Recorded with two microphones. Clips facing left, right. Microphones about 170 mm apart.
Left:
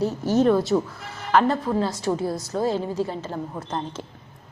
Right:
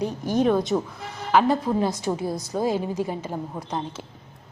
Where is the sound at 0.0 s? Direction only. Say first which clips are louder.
Left 2 dB; 15° right (ahead or behind).